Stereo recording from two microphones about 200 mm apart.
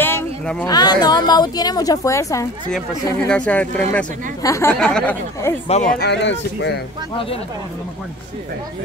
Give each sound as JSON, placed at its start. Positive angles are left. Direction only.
{"t": 0.0, "sound": "a sound", "side_deg": 10}
{"t": 0.7, "sound": "a woman's voice", "side_deg": 20}
{"t": 5.7, "sound": "speech", "side_deg": 35}
{"t": 5.9, "sound": "speech", "side_deg": 60}